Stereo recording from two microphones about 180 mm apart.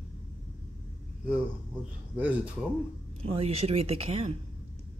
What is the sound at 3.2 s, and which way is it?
Speech, 35° right (ahead or behind).